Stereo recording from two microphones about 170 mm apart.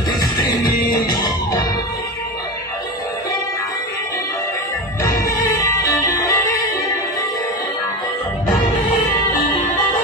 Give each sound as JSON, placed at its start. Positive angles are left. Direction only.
{"t": 0.2, "sound": "music", "side_deg": 25}
{"t": 6.1, "sound": "music", "side_deg": 20}